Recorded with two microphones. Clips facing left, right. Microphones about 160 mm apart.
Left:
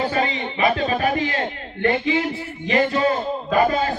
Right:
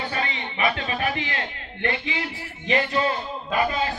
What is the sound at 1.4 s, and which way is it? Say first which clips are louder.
A man's voice: left 7 dB; 40° left (ahead or behind).